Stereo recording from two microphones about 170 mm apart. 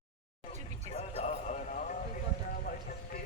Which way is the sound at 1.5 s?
50° left (ahead or behind).